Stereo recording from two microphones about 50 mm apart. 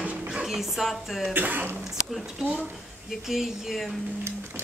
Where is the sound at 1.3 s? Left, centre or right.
Right.